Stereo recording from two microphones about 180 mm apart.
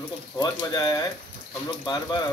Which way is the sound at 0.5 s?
20° left (ahead or behind).